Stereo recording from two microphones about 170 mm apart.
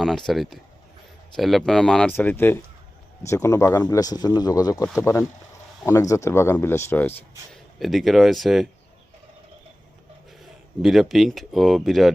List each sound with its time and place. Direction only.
0.0 s speech: centre (ahead or behind)
7.8 s speech: centre (ahead or behind)
10.4 s speech: centre (ahead or behind)